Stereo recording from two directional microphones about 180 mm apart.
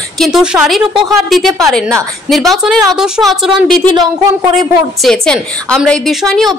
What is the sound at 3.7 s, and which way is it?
Speech, 50° left (ahead or behind).